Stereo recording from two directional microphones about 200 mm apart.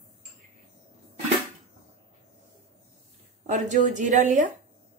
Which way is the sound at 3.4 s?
35° right (ahead or behind).